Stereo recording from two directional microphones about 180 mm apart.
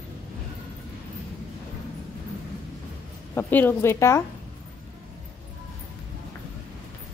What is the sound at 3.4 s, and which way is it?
Speech, 10° left (ahead or behind).